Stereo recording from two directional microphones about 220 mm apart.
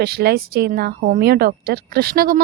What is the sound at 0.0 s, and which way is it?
Speech, 45° right (ahead or behind).